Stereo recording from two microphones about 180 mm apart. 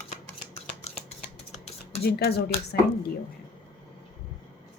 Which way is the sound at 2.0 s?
65° left (ahead or behind).